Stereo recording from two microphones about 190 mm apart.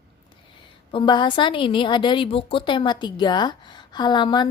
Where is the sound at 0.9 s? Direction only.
25° left (ahead or behind).